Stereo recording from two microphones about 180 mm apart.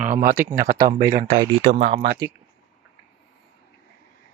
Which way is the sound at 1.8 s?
35° right (ahead or behind).